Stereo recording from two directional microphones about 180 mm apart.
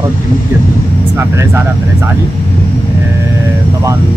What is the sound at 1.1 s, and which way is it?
Speech, 15° right (ahead or behind).